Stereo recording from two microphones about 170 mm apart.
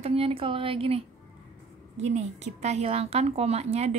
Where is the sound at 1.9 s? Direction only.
45° right (ahead or behind).